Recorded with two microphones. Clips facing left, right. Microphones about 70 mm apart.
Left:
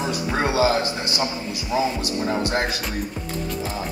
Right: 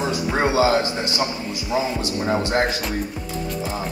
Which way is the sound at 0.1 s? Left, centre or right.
Right.